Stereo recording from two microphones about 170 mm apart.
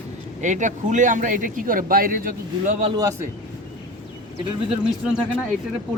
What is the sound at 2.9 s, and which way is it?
Speech, 20° right (ahead or behind).